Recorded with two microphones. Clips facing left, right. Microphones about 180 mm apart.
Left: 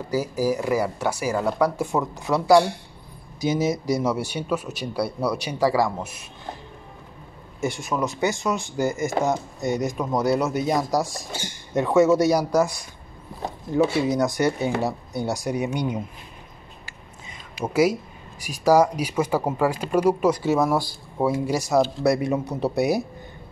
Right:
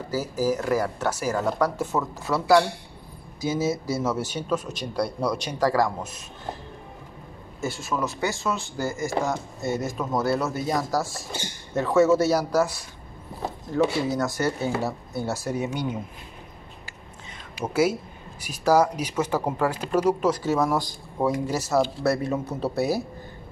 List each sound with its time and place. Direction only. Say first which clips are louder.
0.1 s speech: left 2 dB; 15° left (ahead or behind)
7.6 s speech: left 3 dB; 15° left (ahead or behind)
14.0 s speech: left 4 dB; 15° left (ahead or behind)
17.6 s speech: left 2 dB; 10° left (ahead or behind)